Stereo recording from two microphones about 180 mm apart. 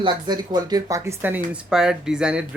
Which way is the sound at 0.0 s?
25° right (ahead or behind).